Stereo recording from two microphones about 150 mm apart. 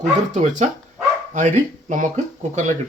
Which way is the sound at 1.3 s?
55° right (ahead or behind).